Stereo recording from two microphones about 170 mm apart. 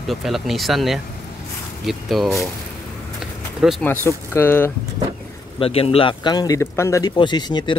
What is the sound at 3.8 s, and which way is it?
Speech, 15° left (ahead or behind).